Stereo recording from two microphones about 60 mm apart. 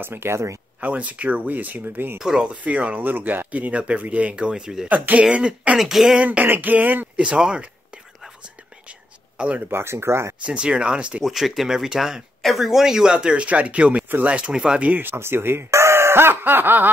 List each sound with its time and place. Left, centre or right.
0.0 s speech: right
0.7 s speech: right
2.1 s speech: centre
4.8 s speech: right
5.8 s speech: centre
6.4 s speech: right
7.2 s a man's voice: centre
9.7 s speech: right
10.4 s speech: centre
11.2 s a man's voice: centre
14.8 s speech: right